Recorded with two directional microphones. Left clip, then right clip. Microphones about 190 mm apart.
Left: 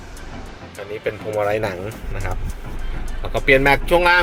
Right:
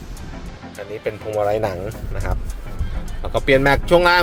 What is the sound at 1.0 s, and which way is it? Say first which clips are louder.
Speech: right 1 dB; 5° right (ahead or behind).